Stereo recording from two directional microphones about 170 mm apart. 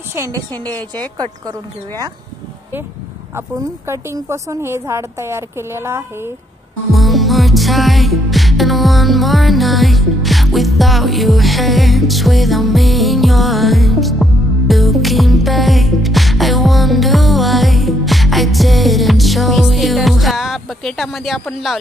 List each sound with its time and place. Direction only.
0.3 s a woman's voice: 10° left (ahead or behind)
3.3 s speech: 15° right (ahead or behind)
6.9 s music: centre (ahead or behind)